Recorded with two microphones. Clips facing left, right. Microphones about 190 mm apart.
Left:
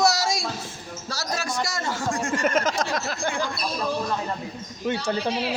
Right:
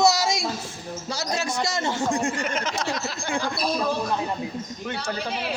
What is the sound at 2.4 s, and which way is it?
Speech, 45° left (ahead or behind).